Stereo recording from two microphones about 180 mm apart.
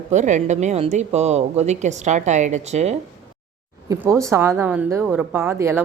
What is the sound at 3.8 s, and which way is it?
A woman's voice, 15° right (ahead or behind).